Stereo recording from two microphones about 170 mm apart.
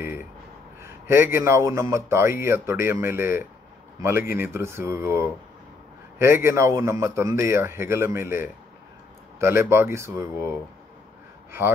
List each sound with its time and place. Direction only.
1.0 s a man's voice: 15° right (ahead or behind)